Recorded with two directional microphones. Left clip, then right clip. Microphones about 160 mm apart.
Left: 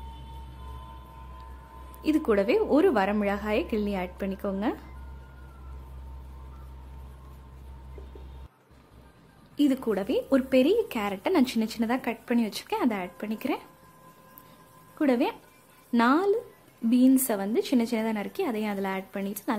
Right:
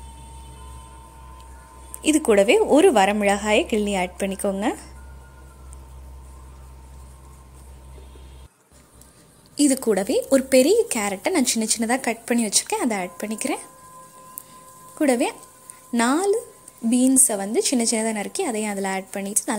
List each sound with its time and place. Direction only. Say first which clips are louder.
2.0 s a woman's voice: right 7 dB; 15° right (ahead or behind)
9.6 s a woman's voice: right 6 dB; 20° right (ahead or behind)
15.0 s a woman's voice: right 5 dB; 15° right (ahead or behind)